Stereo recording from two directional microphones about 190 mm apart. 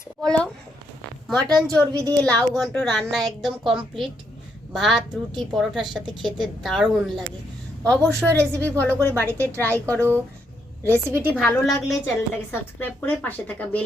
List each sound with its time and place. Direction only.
0.2 s a woman's voice: 5° left (ahead or behind)
1.9 s speech: 20° right (ahead or behind)
2.2 s a woman's voice: 5° left (ahead or behind)
9.1 s speech: 15° right (ahead or behind)
9.9 s a woman's voice: 10° left (ahead or behind)
10.8 s speech: 15° right (ahead or behind)
11.3 s a woman's voice: centre (ahead or behind)
12.0 s a woman's voice: 10° left (ahead or behind)